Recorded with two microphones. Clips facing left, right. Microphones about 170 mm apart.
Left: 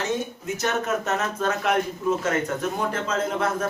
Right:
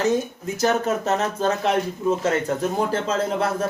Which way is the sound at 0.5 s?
35° right (ahead or behind).